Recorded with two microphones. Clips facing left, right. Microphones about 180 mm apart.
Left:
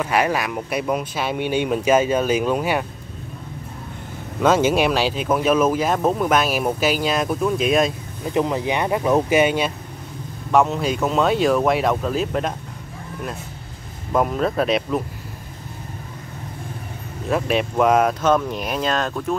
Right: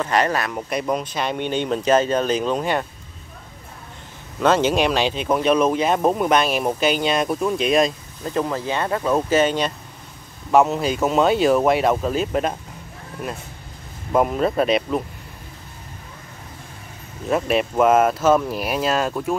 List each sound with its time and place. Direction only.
0.0 s speech: 10° left (ahead or behind)
4.4 s speech: 10° left (ahead or behind)
5.9 s speech: 10° right (ahead or behind)
6.3 s speech: 5° left (ahead or behind)
8.3 s speech: 15° left (ahead or behind)
10.5 s speech: centre (ahead or behind)
14.1 s speech: 5° right (ahead or behind)
17.3 s speech: centre (ahead or behind)